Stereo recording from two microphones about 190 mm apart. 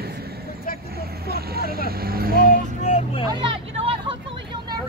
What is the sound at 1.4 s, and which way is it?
Vehicle, 55° right (ahead or behind).